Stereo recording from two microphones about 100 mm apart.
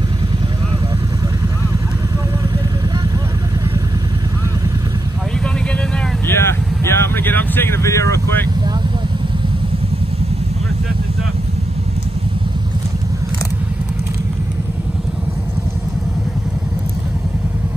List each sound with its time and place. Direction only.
6.2 s vehicle: 25° left (ahead or behind)